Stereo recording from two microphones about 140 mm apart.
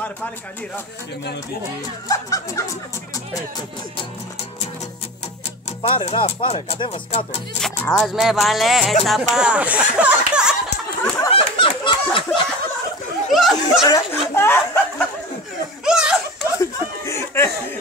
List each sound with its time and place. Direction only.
2.0 s music: 25° left (ahead or behind)
5.8 s speech: 40° left (ahead or behind)
7.6 s speech: 5° left (ahead or behind)
11.2 s a sound: 40° left (ahead or behind)
13.3 s speech: centre (ahead or behind)
14.3 s speech: 15° left (ahead or behind)
15.8 s laughter: 5° right (ahead or behind)
16.5 s chuckle: 20° left (ahead or behind)